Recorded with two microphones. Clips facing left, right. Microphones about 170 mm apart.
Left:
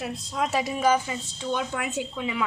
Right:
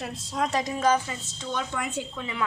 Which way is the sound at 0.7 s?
15° left (ahead or behind).